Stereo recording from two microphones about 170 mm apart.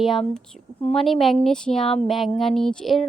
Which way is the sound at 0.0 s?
Centre (ahead or behind).